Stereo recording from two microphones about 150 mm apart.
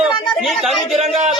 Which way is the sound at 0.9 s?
40° right (ahead or behind).